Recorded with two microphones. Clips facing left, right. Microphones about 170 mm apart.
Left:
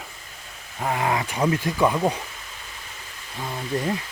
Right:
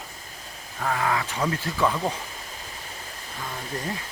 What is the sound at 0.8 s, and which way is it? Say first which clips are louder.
Speech: left 2 dB; 20° left (ahead or behind).